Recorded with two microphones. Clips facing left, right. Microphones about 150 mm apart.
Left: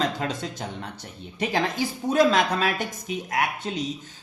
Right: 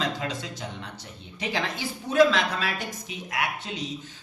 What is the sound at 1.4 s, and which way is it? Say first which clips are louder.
A woman's voice: left 5 dB; 45° left (ahead or behind).